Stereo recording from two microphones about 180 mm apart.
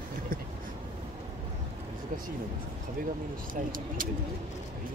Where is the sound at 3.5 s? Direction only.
50° right (ahead or behind).